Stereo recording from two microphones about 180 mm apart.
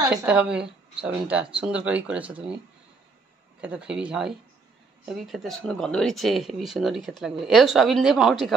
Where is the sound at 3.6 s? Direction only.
5° right (ahead or behind).